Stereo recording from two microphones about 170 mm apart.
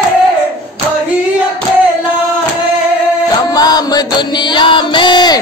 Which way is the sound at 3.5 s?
20° left (ahead or behind).